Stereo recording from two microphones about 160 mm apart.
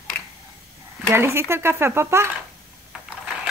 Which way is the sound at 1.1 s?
15° right (ahead or behind).